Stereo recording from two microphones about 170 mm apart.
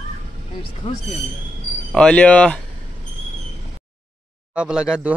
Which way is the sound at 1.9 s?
5° left (ahead or behind).